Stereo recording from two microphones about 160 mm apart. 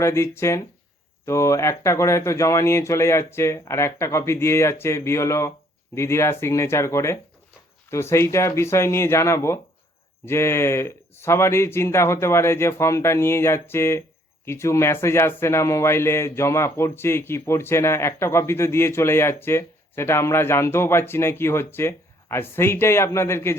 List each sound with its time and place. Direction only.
0.0 s a man's voice: 15° left (ahead or behind)